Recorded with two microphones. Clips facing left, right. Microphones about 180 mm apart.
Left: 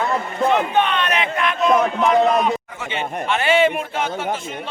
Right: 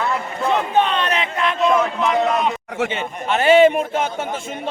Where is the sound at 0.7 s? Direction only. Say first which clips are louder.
Right 1 dB; 35° right (ahead or behind).